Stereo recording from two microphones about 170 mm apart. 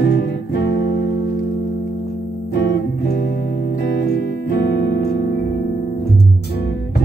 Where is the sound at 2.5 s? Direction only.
75° left (ahead or behind).